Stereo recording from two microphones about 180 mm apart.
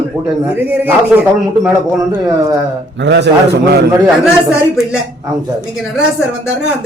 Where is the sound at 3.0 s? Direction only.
75° right (ahead or behind).